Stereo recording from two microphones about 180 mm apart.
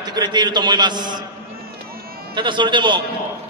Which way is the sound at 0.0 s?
20° right (ahead or behind).